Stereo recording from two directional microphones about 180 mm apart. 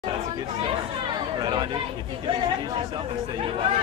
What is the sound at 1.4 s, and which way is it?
Speech, 20° right (ahead or behind).